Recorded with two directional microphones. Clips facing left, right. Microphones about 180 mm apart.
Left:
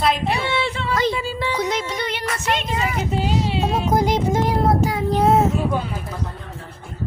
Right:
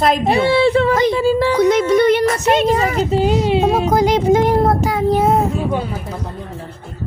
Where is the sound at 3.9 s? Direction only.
80° right.